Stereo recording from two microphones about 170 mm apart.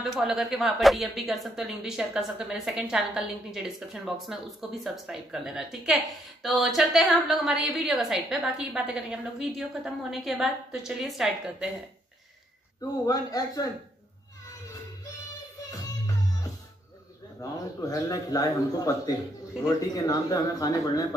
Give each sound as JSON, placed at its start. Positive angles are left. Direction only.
{"t": 0.0, "sound": "a woman's voice", "side_deg": 0}
{"t": 13.0, "sound": "a man's voice", "side_deg": 20}
{"t": 17.4, "sound": "a man's voice", "side_deg": 20}
{"t": 20.0, "sound": "a man's voice", "side_deg": 20}